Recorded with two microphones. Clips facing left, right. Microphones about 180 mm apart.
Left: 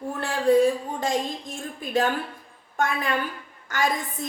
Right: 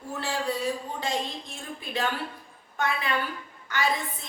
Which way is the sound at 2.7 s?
45° left (ahead or behind).